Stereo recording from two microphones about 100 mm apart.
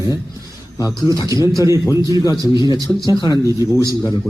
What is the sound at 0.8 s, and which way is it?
Speech, 35° left (ahead or behind).